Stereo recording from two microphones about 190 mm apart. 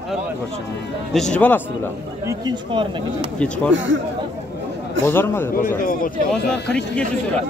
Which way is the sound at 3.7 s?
80° right.